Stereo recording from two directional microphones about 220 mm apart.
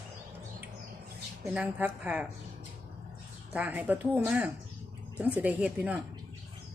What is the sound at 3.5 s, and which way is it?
Speech, 5° right (ahead or behind).